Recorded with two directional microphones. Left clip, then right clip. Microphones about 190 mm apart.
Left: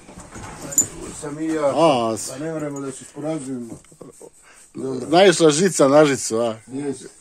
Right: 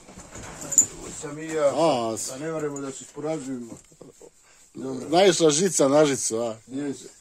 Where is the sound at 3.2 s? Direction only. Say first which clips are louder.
Left 3 dB; 25° left (ahead or behind).